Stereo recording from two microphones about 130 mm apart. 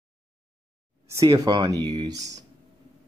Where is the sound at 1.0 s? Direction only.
25° right (ahead or behind).